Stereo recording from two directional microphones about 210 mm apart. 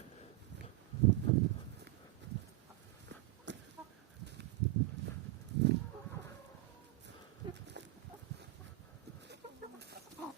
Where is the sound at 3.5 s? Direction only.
60° right (ahead or behind).